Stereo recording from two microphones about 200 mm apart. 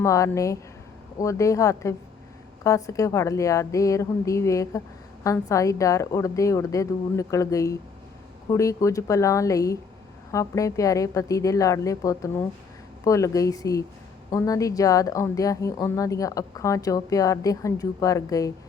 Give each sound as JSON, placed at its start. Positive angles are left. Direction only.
{"t": 0.0, "sound": "a woman's voice", "side_deg": 15}